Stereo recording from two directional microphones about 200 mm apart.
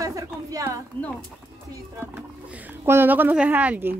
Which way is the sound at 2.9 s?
10° right (ahead or behind).